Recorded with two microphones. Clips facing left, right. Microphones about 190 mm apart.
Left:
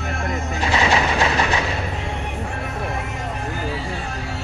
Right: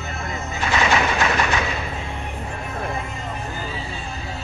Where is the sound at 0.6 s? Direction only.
30° left (ahead or behind).